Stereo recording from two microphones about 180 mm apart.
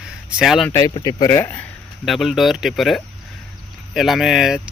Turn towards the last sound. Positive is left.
turn(degrees=0)  # may be behind; listen again after turning